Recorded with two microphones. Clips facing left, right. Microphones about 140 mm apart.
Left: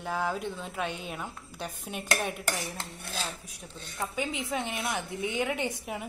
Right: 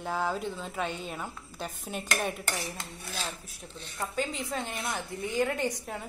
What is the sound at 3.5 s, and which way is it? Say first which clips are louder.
A woman's voice: even; centre (ahead or behind).